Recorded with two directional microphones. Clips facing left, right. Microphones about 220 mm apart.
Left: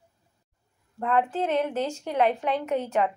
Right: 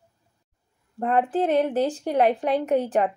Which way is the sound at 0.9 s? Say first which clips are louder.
Right 3 dB; 35° right (ahead or behind).